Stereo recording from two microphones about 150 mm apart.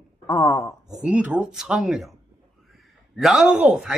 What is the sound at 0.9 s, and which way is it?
A man's voice, 5° right (ahead or behind).